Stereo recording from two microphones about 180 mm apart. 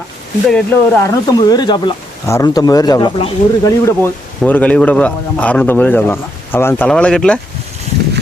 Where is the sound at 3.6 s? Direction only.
15° left (ahead or behind).